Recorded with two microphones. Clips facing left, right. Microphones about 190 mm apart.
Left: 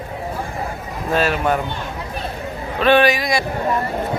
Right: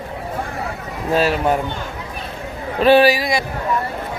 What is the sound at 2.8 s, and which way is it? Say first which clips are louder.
Speech: right 2 dB; 35° right (ahead or behind).